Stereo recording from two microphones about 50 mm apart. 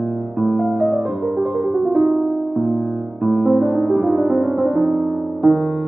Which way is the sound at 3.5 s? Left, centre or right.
Centre.